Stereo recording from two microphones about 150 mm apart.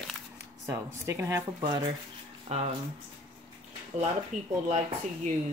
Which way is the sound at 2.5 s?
50° right (ahead or behind).